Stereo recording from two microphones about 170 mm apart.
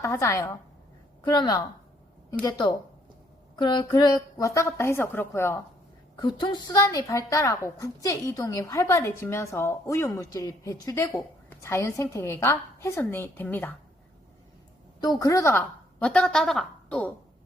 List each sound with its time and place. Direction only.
0.0 s a woman's voice: 15° left (ahead or behind)
6.1 s a woman's voice: 25° left (ahead or behind); by 13.7 s 10° left (ahead or behind)
15.0 s a woman's voice: 20° left (ahead or behind)